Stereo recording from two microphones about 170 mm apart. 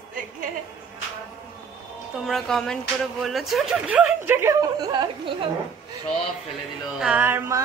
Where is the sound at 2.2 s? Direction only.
Centre (ahead or behind); by 5.5 s 30° right (ahead or behind).